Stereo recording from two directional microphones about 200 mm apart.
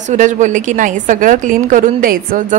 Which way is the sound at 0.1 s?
40° right (ahead or behind).